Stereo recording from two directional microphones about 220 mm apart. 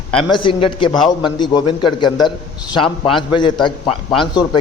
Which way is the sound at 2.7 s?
25° left (ahead or behind).